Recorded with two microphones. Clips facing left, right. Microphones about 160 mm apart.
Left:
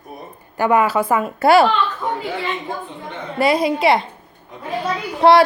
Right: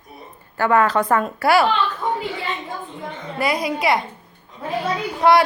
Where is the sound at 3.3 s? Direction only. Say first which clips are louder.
Left 5 dB; 25° left (ahead or behind).